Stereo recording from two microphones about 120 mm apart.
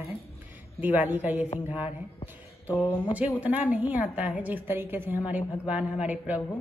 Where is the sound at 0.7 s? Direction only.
15° right (ahead or behind).